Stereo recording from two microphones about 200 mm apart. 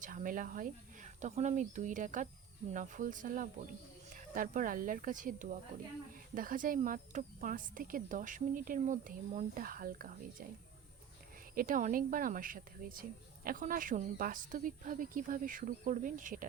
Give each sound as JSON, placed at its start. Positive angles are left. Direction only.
{"t": 0.0, "sound": "speech", "side_deg": -40}
{"t": 11.5, "sound": "speech", "side_deg": -45}